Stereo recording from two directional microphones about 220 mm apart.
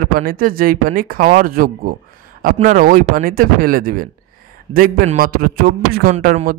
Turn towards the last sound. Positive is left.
turn(degrees=-35)  # may be behind; listen again after turning